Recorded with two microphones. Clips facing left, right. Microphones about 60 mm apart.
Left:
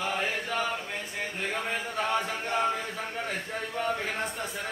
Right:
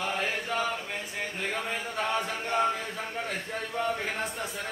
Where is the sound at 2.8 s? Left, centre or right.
Centre.